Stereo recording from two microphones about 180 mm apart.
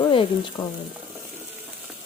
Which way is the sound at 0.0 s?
25° left (ahead or behind).